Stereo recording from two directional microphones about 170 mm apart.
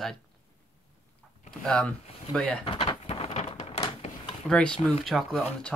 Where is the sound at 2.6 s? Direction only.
30° left (ahead or behind).